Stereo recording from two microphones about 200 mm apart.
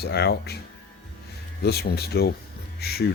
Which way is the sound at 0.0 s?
55° left (ahead or behind).